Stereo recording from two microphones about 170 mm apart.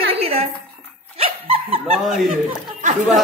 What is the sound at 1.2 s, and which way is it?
Dog, 35° right (ahead or behind).